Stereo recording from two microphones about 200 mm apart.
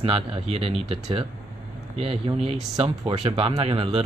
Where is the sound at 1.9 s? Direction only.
30° right (ahead or behind).